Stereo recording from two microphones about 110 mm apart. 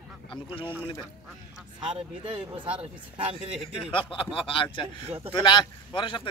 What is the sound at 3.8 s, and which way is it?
A man's voice, 50° left (ahead or behind).